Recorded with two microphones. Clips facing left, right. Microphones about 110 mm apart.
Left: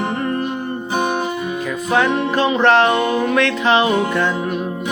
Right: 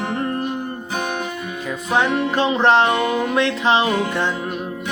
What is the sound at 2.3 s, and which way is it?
Music, 25° right (ahead or behind).